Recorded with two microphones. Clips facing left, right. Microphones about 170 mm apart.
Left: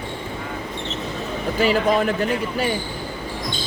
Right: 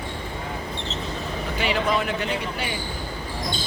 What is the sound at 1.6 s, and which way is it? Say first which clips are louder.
Speech: left 6 dB; 45° left (ahead or behind).